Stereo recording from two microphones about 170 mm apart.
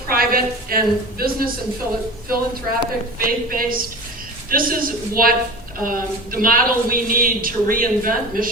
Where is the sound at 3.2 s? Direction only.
55° right (ahead or behind).